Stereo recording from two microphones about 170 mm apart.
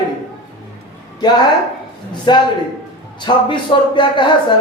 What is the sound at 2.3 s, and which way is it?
Speech, 25° left (ahead or behind).